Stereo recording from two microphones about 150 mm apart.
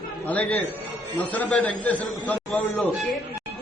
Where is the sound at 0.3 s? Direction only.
10° left (ahead or behind).